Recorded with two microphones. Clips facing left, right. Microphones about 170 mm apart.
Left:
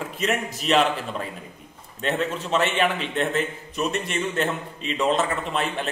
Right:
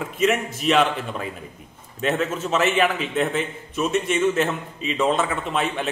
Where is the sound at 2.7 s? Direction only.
Centre (ahead or behind).